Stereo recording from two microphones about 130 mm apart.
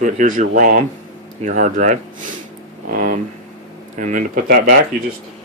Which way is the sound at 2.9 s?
90° right.